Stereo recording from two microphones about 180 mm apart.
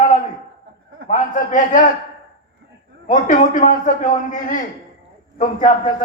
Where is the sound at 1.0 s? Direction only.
40° left (ahead or behind).